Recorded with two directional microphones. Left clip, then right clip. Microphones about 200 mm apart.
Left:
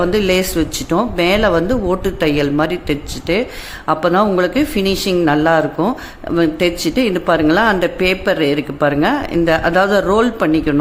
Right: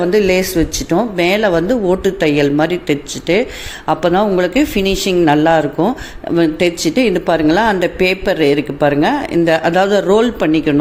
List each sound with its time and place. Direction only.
0.0 s speech: 5° right (ahead or behind)